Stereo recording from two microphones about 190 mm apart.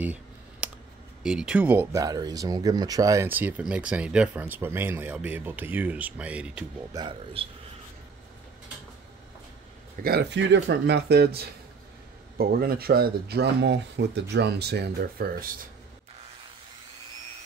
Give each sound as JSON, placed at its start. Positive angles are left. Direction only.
{"t": 0.0, "sound": "computer keyboard", "side_deg": -5}
{"t": 1.2, "sound": "speech", "side_deg": -5}
{"t": 6.9, "sound": "a man's voice", "side_deg": -25}
{"t": 10.0, "sound": "speech", "side_deg": -60}